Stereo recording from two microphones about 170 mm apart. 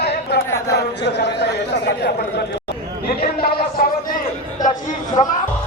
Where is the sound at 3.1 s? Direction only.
65° left (ahead or behind).